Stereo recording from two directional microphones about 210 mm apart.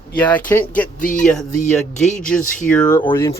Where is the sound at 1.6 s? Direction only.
35° left (ahead or behind).